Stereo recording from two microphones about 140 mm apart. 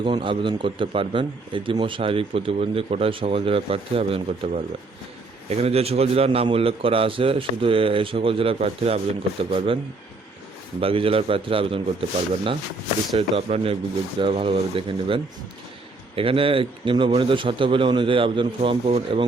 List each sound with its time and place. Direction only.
0.0 s a man's voice: 35° right (ahead or behind)
10.8 s a man's voice: 40° right (ahead or behind)